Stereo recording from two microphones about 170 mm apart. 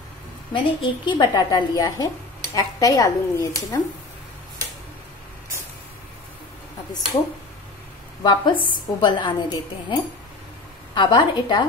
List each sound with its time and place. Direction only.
0.5 s a woman's voice: 30° left (ahead or behind)
8.2 s a woman's voice: 25° left (ahead or behind)
11.0 s a woman's voice: 25° left (ahead or behind)